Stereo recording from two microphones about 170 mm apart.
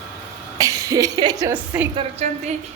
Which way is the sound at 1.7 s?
10° right (ahead or behind).